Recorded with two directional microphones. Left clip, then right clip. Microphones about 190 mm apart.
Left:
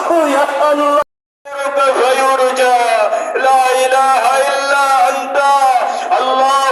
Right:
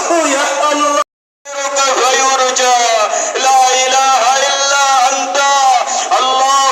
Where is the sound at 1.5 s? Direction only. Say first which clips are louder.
Left 1 dB; 40° left (ahead or behind).